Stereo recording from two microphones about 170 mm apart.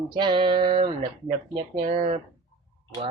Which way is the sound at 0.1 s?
30° right (ahead or behind).